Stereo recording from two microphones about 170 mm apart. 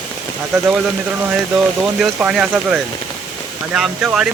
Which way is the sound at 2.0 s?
5° right (ahead or behind).